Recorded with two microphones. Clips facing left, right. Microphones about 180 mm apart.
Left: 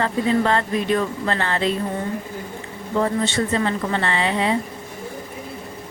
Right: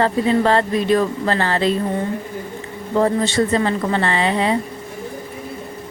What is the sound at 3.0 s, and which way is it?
Speech, 35° right (ahead or behind).